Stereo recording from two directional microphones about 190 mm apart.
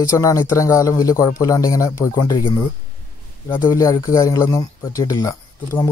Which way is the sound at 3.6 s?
20° left (ahead or behind).